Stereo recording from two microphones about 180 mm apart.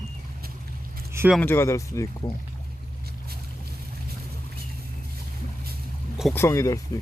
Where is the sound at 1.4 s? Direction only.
15° left (ahead or behind).